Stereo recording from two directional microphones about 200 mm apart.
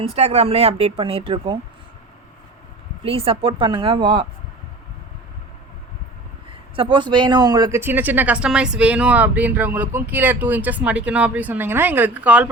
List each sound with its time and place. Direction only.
0.0 s speech: 30° right (ahead or behind)
3.0 s speech: 30° right (ahead or behind)
6.7 s speech: 25° right (ahead or behind); by 12.5 s 5° right (ahead or behind)